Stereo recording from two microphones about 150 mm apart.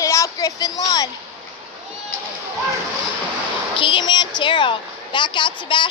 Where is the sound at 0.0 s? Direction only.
20° left (ahead or behind).